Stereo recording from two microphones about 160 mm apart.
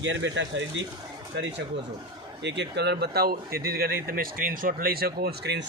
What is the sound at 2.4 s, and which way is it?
Speech, 90° right.